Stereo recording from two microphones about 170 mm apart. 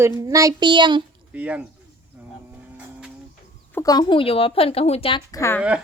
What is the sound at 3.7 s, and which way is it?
A woman's voice, 20° left (ahead or behind).